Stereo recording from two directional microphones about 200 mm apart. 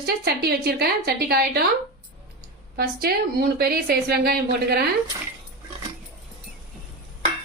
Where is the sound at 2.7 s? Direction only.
50° right (ahead or behind).